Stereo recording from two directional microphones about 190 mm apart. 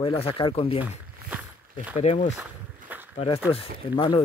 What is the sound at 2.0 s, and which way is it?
Speech, 35° left (ahead or behind).